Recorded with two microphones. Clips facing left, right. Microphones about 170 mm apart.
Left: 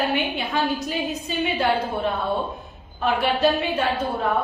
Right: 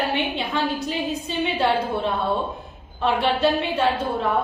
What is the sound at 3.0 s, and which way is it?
Speech, 30° right (ahead or behind).